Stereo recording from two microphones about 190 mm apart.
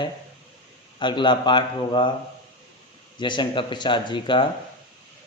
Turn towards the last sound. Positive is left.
turn(degrees=25)  # may be behind; listen again after turning